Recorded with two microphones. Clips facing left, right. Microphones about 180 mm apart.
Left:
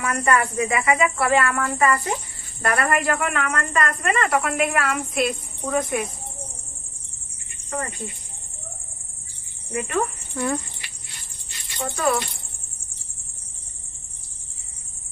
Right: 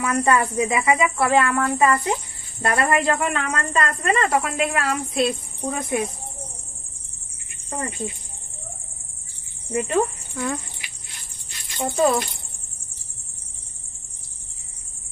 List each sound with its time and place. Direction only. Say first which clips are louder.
0.0 s speech: right 2 dB; 25° right (ahead or behind)
9.7 s speech: right 4 dB; 25° right (ahead or behind)
10.3 s speech: left 4 dB; centre (ahead or behind)
11.8 s speech: right 4 dB; 20° right (ahead or behind)